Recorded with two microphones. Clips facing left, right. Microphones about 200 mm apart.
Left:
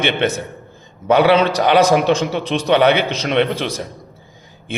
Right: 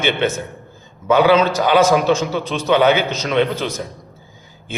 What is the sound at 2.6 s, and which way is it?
Speech, 60° left (ahead or behind).